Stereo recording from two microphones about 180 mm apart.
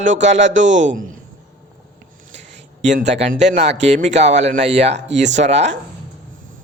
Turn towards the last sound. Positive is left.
turn(degrees=-40)  # may be behind; listen again after turning